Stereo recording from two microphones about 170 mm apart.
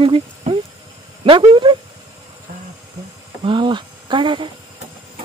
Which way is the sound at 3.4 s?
30° right (ahead or behind).